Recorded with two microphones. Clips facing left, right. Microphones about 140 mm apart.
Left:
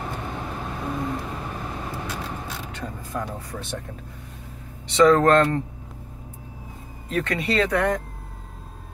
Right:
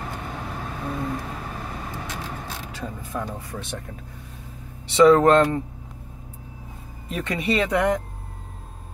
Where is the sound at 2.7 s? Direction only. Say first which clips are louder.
Right 1 dB; 5° right (ahead or behind).